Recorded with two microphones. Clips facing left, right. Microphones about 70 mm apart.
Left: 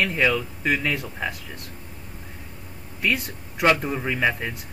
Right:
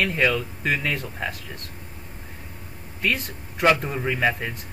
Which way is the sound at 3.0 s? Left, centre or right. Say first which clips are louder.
Left 1 dB; centre.